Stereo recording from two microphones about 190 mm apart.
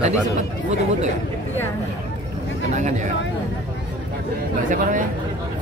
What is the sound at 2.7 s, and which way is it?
Speech, 40° right (ahead or behind).